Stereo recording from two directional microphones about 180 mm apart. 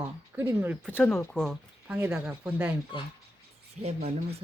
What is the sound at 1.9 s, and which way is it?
Speech, 10° right (ahead or behind).